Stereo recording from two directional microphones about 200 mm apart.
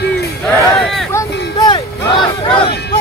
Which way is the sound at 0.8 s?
Centre (ahead or behind).